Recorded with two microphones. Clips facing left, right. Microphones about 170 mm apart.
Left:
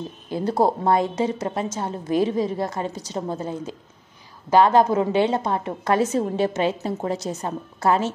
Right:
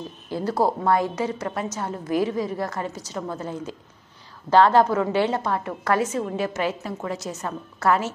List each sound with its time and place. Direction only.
0.3 s a woman's voice: 25° left (ahead or behind)